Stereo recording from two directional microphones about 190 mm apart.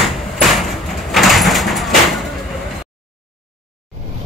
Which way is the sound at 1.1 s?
Centre (ahead or behind).